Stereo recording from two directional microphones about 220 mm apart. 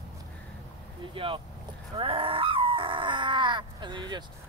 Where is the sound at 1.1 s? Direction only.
25° right (ahead or behind).